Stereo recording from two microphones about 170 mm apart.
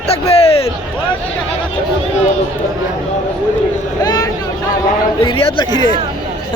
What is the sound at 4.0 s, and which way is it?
Vehicle, 20° left (ahead or behind).